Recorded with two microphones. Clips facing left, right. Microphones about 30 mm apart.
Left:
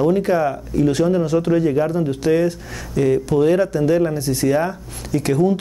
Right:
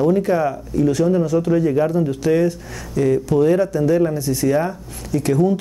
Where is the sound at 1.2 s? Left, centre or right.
Left.